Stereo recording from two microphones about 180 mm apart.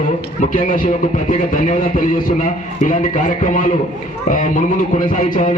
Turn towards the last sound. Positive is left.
turn(degrees=45)  # may be behind; listen again after turning